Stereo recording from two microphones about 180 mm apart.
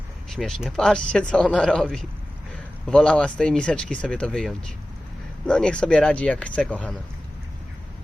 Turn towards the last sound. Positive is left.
turn(degrees=5)  # may be behind; listen again after turning